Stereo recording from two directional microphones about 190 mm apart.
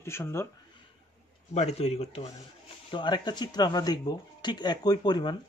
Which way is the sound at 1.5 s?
35° left (ahead or behind).